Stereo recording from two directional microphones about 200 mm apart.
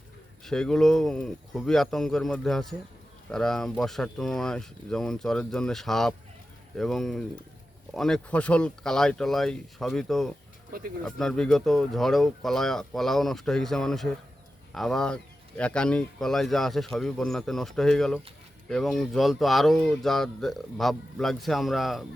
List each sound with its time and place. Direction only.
0.4 s speech: 5° left (ahead or behind)
10.7 s speech: 45° right (ahead or behind)
11.0 s speech: centre (ahead or behind)